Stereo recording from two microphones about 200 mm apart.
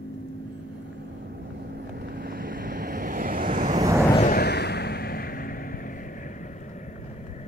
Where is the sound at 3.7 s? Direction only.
15° right (ahead or behind).